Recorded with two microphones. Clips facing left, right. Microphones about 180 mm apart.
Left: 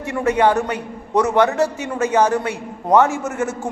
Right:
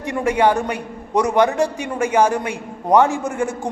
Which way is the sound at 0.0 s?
15° right (ahead or behind).